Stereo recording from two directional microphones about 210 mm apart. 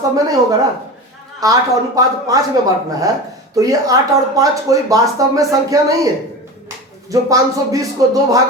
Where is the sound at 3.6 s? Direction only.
15° right (ahead or behind).